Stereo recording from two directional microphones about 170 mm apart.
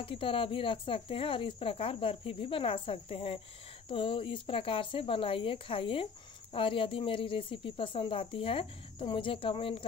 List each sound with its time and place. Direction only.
0.0 s speech: 30° left (ahead or behind)